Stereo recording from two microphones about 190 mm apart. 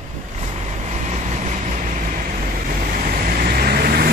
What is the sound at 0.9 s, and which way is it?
Vehicle, 40° right (ahead or behind).